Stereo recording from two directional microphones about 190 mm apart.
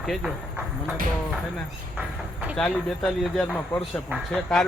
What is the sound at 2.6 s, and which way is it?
Speech, 5° left (ahead or behind).